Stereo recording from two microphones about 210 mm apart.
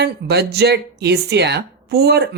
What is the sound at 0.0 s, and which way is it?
Speech, 50° right (ahead or behind).